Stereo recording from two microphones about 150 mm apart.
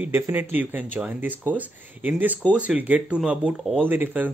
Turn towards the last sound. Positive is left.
turn(degrees=-15)  # may be behind; listen again after turning